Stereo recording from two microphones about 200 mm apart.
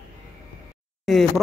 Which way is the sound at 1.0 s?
Centre (ahead or behind).